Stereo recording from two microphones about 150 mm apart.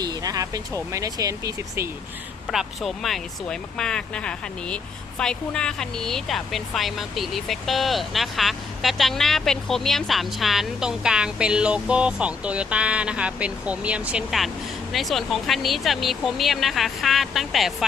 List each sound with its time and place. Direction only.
0.0 s speech: 25° right (ahead or behind)
2.5 s speech: centre (ahead or behind)